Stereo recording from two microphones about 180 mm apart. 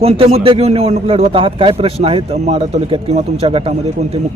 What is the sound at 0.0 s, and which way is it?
A man's voice, 35° right (ahead or behind).